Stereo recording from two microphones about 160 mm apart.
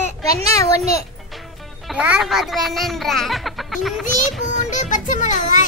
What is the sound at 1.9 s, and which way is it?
A child's voice, 5° right (ahead or behind).